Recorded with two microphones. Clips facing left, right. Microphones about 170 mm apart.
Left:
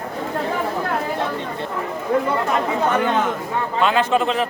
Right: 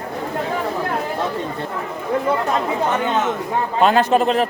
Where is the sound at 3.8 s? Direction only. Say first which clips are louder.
Right 3 dB; 45° right (ahead or behind).